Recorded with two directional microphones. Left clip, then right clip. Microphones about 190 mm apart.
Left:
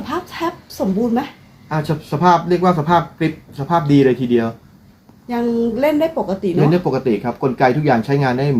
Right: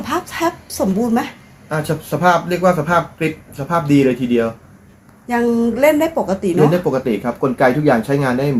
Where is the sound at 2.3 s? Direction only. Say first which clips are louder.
Left 1 dB; 40° left (ahead or behind).